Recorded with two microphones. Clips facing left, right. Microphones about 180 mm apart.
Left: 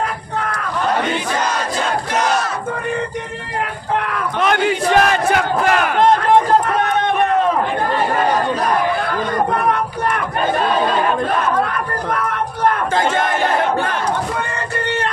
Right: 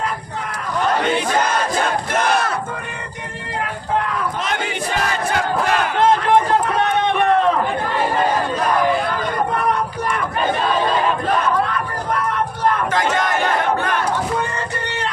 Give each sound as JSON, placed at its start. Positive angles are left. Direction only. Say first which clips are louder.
{"t": 1.8, "sound": "crowd", "louder": "even", "side_deg": -55}
{"t": 4.4, "sound": "battle cry", "louder": "left 7 dB", "side_deg": 60}
{"t": 13.0, "sound": "battle cry", "louder": "left 2 dB", "side_deg": 50}